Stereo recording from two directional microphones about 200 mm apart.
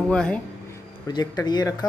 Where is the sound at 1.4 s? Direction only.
20° left (ahead or behind).